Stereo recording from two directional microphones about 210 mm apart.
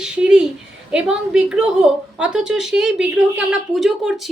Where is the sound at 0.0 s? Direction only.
5° right (ahead or behind).